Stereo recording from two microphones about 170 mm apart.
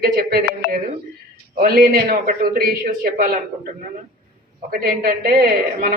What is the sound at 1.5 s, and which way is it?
A man's voice, 60° right (ahead or behind).